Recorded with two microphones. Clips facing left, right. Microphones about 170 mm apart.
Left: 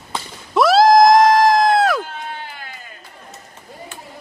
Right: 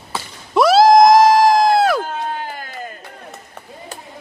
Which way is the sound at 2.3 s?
45° right (ahead or behind).